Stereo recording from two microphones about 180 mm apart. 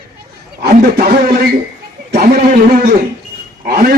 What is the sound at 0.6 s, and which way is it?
A man's voice, 55° right (ahead or behind).